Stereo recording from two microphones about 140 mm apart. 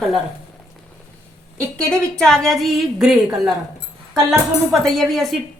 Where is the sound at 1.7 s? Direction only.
5° left (ahead or behind).